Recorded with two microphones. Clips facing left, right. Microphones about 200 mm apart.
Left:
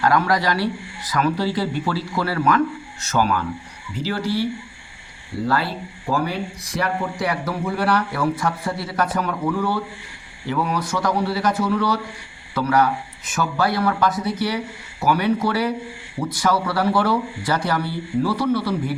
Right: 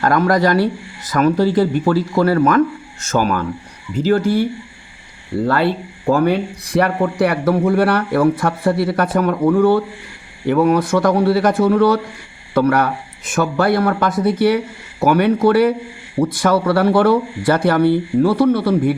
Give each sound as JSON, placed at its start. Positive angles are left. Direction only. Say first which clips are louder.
{"t": 0.0, "sound": "speech", "louder": "right 5 dB", "side_deg": -50}
{"t": 5.5, "sound": "speech", "louder": "right 6 dB", "side_deg": -60}